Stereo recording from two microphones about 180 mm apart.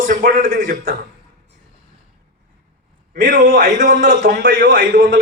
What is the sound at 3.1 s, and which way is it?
A man's voice, 45° right (ahead or behind).